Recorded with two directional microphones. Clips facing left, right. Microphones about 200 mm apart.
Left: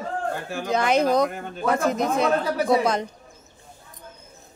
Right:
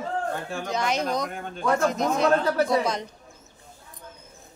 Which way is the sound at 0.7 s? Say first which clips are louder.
Left 7 dB; 55° left (ahead or behind).